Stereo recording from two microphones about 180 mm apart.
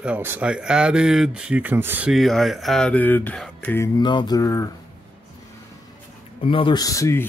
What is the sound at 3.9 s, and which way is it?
Music, 25° left (ahead or behind).